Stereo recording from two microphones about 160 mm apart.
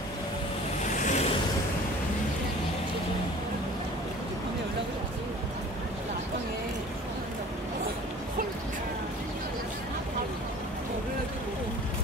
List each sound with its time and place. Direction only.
0.9 s vehicle: 50° left (ahead or behind)